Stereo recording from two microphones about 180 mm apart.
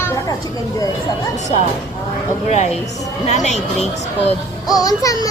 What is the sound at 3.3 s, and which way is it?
Speech, 40° left (ahead or behind).